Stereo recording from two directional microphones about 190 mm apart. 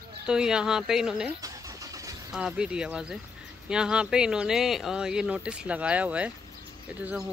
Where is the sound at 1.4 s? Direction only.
20° right (ahead or behind).